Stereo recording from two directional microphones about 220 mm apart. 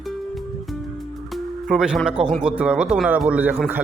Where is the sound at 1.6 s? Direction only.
Centre (ahead or behind).